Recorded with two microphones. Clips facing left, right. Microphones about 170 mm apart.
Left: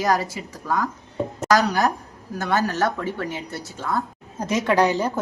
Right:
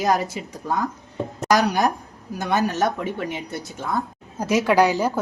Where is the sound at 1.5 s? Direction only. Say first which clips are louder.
Even; 15° right (ahead or behind).